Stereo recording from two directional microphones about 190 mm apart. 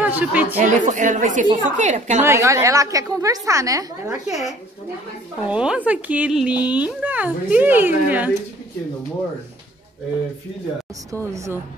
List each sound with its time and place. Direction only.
0.0 s speech: 10° right (ahead or behind)
0.7 s speech: 40° right (ahead or behind)
2.2 s a child's voice: 15° right (ahead or behind)
4.3 s a child's voice: centre (ahead or behind)
11.1 s a child's voice: 15° right (ahead or behind)